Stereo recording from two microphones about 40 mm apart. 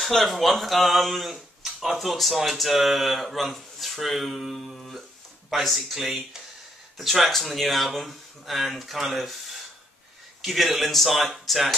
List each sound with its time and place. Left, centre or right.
0.0 s speech: centre
4.7 s music: centre
5.5 s speech: centre